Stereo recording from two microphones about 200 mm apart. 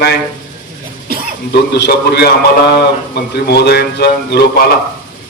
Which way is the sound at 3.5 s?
55° left (ahead or behind).